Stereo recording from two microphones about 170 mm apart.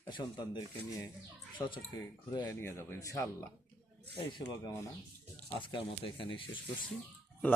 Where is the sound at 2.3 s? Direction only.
25° left (ahead or behind).